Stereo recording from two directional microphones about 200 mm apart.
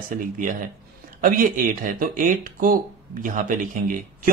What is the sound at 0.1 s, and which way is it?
Speech, 45° right (ahead or behind).